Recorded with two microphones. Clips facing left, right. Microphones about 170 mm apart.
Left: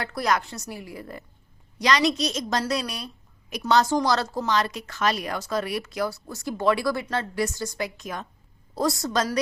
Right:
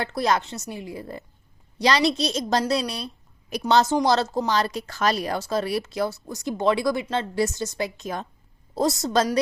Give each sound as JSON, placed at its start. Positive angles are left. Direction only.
{"t": 0.0, "sound": "a woman's voice", "side_deg": -25}